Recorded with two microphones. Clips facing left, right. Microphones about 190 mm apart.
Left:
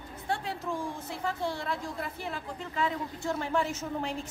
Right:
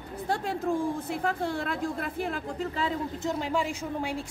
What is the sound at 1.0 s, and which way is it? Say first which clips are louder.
A woman's voice: right 4 dB; 55° right (ahead or behind).